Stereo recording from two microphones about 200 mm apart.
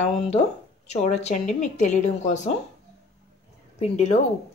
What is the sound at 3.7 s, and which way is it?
Speech, 30° left (ahead or behind).